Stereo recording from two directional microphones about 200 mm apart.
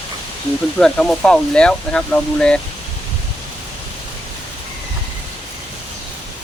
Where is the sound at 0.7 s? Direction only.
5° left (ahead or behind).